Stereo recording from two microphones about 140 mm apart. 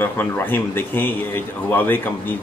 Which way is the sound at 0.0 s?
15° left (ahead or behind).